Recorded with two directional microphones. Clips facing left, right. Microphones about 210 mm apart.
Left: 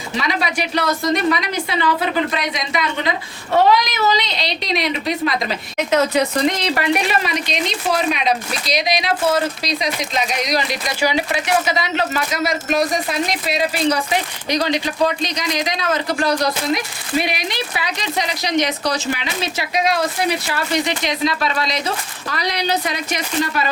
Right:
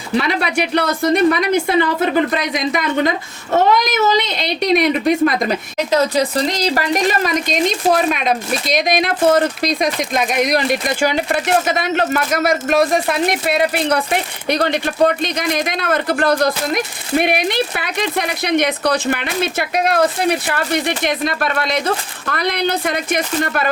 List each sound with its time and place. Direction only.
0.2 s a woman's voice: 60° right (ahead or behind)
5.7 s speech: 35° right (ahead or behind); by 23.6 s 55° right (ahead or behind)